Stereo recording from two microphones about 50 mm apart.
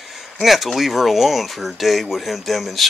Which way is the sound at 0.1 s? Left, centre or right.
Centre.